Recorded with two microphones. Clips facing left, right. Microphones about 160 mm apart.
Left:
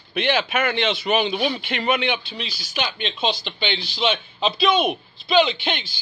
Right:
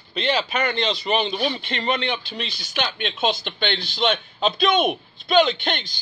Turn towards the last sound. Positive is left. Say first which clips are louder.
# even
turn(degrees=5)  # may be behind; listen again after turning